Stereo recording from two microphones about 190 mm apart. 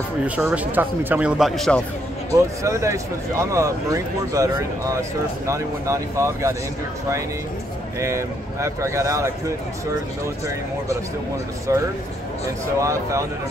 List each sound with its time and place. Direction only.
0.4 s speech: 10° right (ahead or behind)
2.3 s speech: 15° right (ahead or behind)
8.0 s speech: 15° right (ahead or behind)
11.7 s speech: 15° right (ahead or behind)